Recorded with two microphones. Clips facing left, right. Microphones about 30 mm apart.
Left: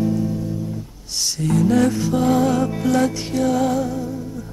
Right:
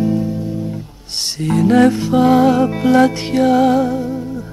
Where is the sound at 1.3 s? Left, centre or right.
Right.